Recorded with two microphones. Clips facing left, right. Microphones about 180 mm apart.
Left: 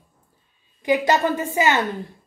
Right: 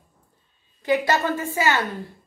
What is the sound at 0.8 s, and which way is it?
A woman's voice, 15° left (ahead or behind).